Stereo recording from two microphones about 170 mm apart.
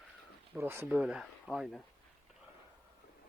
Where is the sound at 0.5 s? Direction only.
15° right (ahead or behind).